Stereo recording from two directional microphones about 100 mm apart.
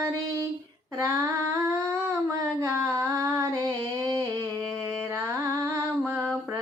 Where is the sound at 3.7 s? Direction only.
40° right (ahead or behind).